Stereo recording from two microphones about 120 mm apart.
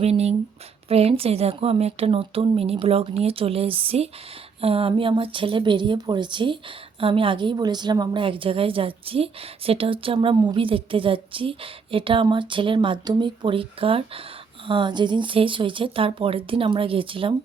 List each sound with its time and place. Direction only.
0.0 s a woman's voice: 60° right (ahead or behind)